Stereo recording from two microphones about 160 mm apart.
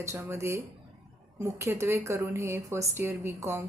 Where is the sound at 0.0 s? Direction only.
15° right (ahead or behind).